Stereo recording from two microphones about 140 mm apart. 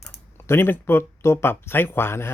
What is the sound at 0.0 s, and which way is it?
Speech, 15° left (ahead or behind).